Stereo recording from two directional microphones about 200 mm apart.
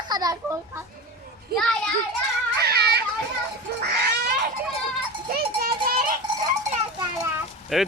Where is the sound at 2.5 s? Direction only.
55° right (ahead or behind).